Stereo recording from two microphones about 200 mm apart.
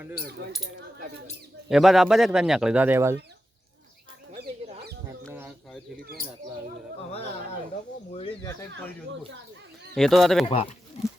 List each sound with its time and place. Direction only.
0.5 s speech: 80° right
1.7 s a man's voice: centre (ahead or behind)
9.9 s a man's voice: centre (ahead or behind)
10.4 s speech: 30° left (ahead or behind)